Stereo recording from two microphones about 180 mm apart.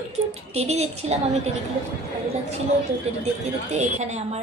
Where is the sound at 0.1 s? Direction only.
35° right (ahead or behind).